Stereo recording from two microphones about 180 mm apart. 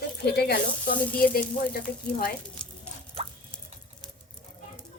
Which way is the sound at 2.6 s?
5° left (ahead or behind).